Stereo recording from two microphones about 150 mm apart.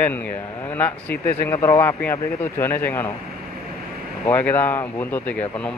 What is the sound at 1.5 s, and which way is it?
Speech, 20° left (ahead or behind).